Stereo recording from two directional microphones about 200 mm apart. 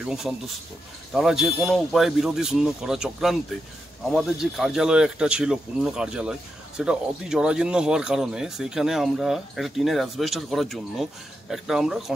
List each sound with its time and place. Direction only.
0.0 s speech: centre (ahead or behind)